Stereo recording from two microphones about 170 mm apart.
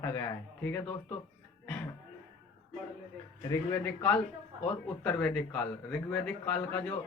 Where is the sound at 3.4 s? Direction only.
20° left (ahead or behind).